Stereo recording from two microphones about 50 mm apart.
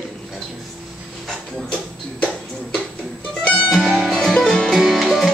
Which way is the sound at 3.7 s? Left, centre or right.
Centre.